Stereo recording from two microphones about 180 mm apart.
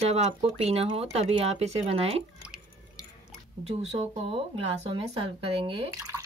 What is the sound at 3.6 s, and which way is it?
Speech, 35° right (ahead or behind).